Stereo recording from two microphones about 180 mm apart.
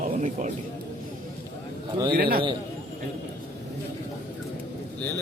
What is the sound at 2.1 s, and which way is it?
Speech, 55° right (ahead or behind).